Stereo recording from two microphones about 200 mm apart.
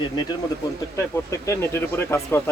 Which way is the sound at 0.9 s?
15° left (ahead or behind).